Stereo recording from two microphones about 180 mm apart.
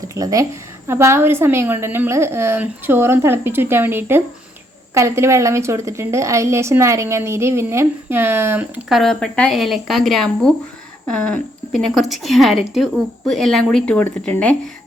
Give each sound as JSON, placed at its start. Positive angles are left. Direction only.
{"t": 0.1, "sound": "a woman's voice", "side_deg": -20}
{"t": 9.0, "sound": "a woman's voice", "side_deg": 5}